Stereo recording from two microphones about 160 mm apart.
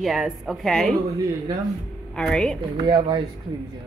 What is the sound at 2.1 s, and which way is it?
Speech, 5° left (ahead or behind).